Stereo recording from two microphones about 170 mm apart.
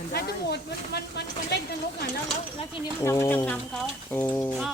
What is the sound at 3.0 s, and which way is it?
Speech, 15° left (ahead or behind).